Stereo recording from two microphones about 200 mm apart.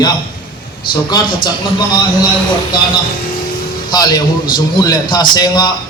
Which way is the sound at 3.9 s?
20° left (ahead or behind).